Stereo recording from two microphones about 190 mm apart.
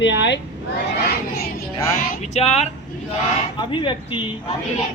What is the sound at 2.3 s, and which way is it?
Speech, 35° left (ahead or behind).